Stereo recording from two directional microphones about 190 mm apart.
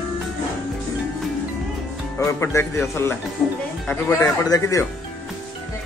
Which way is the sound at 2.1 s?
15° left (ahead or behind).